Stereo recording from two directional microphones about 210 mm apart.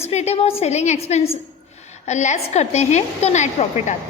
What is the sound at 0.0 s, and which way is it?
A woman's voice, 30° left (ahead or behind).